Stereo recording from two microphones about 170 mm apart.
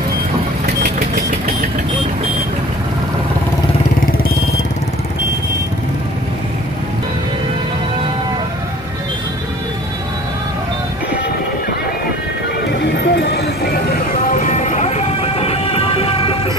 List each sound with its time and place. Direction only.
0.8 s vehicle: 55° right (ahead or behind)
12.8 s vehicle: 75° left (ahead or behind)
14.3 s music: 45° left (ahead or behind)